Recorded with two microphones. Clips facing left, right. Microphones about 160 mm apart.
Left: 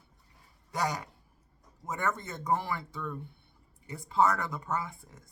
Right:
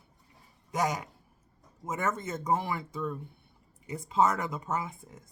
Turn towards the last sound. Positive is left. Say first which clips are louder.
# right 1 dB
turn(degrees=-15)  # may be behind; listen again after turning